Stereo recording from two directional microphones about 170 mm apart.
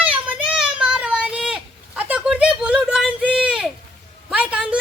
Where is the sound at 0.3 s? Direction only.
5° right (ahead or behind).